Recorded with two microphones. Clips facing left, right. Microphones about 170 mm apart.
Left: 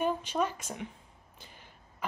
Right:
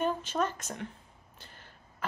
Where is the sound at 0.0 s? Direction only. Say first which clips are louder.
Even; 10° left (ahead or behind).